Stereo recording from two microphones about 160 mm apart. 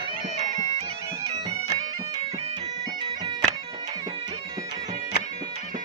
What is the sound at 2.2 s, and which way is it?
Bagpipes, 40° right (ahead or behind).